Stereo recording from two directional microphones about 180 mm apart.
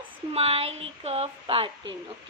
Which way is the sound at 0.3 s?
35° right (ahead or behind).